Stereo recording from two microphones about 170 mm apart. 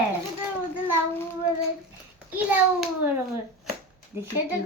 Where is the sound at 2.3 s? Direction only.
10° right (ahead or behind).